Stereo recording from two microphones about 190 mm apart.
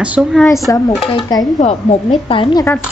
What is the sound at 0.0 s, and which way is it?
Speech, 5° right (ahead or behind).